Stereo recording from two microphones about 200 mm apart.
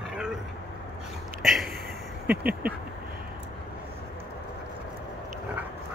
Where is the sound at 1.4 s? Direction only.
Centre (ahead or behind).